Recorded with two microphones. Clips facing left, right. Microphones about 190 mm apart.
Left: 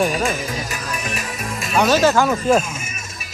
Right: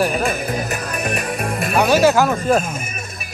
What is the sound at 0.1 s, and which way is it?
Music, 60° right (ahead or behind).